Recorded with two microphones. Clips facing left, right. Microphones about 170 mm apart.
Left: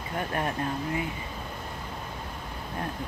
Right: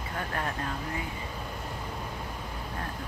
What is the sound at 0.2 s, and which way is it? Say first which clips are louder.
Speech: left 4 dB; 20° left (ahead or behind).